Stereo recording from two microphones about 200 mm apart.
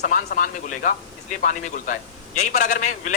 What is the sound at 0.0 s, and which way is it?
A man's voice, 50° left (ahead or behind).